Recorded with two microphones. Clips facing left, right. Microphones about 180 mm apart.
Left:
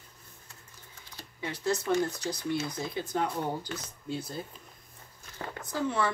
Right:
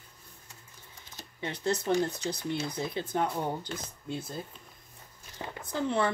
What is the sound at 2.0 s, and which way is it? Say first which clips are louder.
Speech: even; 30° right (ahead or behind).